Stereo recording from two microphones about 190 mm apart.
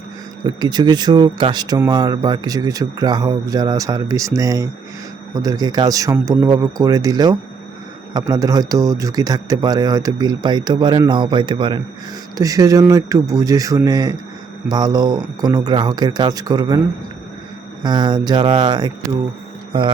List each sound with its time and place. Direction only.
0.4 s speech: 20° right (ahead or behind)
17.8 s speech: 20° right (ahead or behind)